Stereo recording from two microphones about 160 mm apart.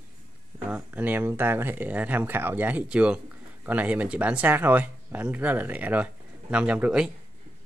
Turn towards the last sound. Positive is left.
turn(degrees=-5)  # may be behind; listen again after turning